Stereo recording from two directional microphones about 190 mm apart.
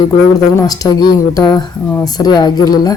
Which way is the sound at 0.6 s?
20° left (ahead or behind).